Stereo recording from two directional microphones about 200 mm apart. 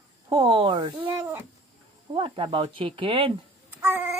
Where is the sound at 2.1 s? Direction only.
25° right (ahead or behind).